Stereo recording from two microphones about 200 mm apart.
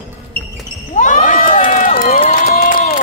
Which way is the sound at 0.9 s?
40° left (ahead or behind).